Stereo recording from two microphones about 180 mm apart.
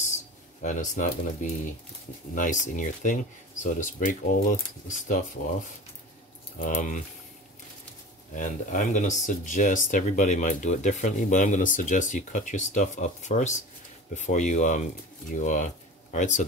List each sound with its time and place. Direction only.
0.6 s speech: 45° left (ahead or behind)
6.6 s speech: 45° left (ahead or behind)
8.4 s speech: 45° left (ahead or behind)